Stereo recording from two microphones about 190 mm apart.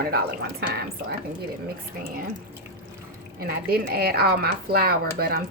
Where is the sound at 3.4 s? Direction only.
55° right (ahead or behind).